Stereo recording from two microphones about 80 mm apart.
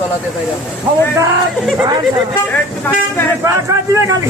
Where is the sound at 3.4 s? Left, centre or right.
Right.